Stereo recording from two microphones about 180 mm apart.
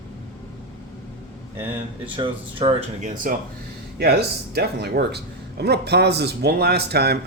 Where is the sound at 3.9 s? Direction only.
60° right (ahead or behind).